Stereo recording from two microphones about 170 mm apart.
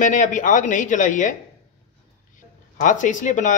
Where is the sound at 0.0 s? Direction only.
50° left (ahead or behind).